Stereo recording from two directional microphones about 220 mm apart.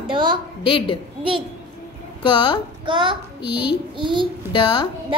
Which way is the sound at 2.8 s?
20° right (ahead or behind).